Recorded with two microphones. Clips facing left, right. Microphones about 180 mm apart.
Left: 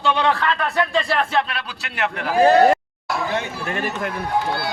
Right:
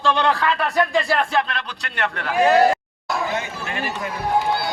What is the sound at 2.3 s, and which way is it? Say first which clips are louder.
Speech: left 2 dB; 30° left (ahead or behind).